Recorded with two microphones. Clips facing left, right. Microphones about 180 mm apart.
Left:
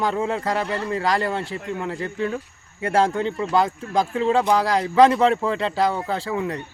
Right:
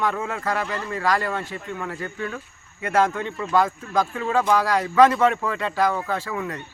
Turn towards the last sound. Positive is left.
turn(degrees=30)  # may be behind; listen again after turning